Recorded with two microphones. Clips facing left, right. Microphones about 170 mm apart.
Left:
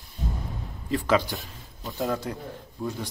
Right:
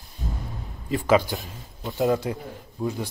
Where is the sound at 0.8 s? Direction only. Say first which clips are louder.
Right 3 dB; 10° right (ahead or behind).